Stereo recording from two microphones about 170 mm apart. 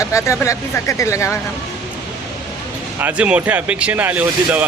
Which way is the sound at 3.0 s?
10° right (ahead or behind).